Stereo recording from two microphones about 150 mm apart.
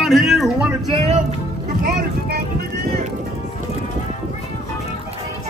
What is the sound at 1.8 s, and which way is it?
Vehicle, 85° right.